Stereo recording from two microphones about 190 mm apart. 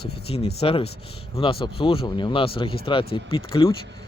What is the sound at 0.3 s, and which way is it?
Speech, 30° left (ahead or behind).